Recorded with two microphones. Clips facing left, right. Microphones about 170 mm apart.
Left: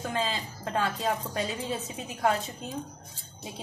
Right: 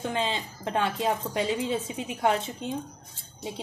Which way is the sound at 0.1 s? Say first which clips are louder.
Right 2 dB; 25° right (ahead or behind).